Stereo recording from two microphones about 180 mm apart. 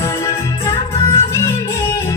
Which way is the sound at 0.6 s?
15° left (ahead or behind).